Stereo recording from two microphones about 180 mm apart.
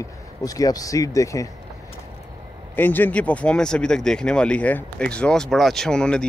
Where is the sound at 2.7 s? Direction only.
10° left (ahead or behind).